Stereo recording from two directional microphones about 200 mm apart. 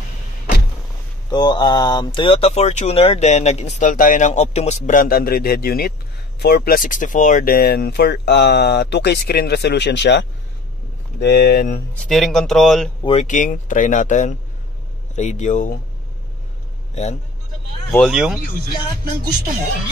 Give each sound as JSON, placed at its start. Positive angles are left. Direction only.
{"t": 1.3, "sound": "speech", "side_deg": 20}
{"t": 11.9, "sound": "speech", "side_deg": 0}
{"t": 13.0, "sound": "speech", "side_deg": 30}
{"t": 16.9, "sound": "a man's voice", "side_deg": 35}
{"t": 17.9, "sound": "speech", "side_deg": 0}